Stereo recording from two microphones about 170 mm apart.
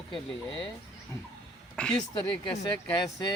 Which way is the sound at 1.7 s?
5° left (ahead or behind).